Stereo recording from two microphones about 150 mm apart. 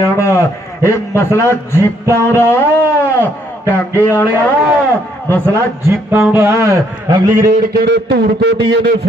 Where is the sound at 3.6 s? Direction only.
15° right (ahead or behind).